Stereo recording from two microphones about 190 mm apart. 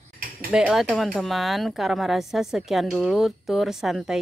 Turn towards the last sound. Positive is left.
turn(degrees=0)  # may be behind; listen again after turning